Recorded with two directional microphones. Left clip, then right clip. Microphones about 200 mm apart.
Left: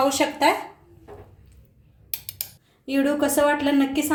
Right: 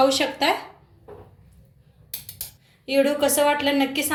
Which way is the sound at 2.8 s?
45° left (ahead or behind).